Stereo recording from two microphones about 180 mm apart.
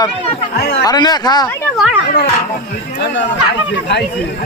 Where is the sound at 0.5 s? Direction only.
65° left (ahead or behind).